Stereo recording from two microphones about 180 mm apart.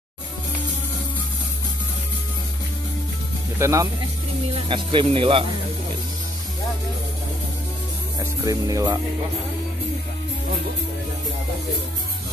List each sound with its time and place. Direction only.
3.5 s speech: 15° right (ahead or behind)
4.6 s speech: 25° right (ahead or behind)
8.2 s speech: 20° right (ahead or behind)